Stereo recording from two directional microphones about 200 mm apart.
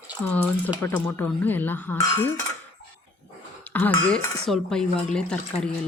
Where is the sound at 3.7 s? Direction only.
10° left (ahead or behind).